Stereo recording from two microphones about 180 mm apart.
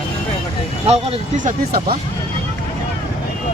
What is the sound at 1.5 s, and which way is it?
Speech, 55° right (ahead or behind).